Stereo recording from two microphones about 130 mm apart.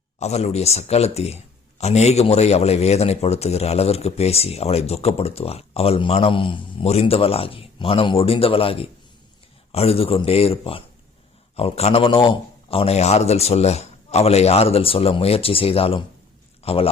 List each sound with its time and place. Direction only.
0.2 s a man's voice: 55° left (ahead or behind)